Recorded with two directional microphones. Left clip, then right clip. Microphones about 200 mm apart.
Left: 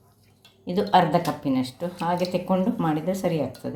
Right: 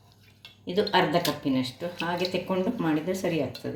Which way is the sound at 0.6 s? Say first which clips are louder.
Left 4 dB; 60° left (ahead or behind).